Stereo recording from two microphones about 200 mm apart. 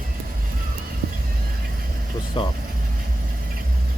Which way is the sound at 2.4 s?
25° left (ahead or behind).